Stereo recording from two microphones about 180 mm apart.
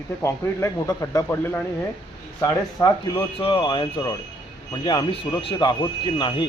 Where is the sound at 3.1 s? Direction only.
30° left (ahead or behind).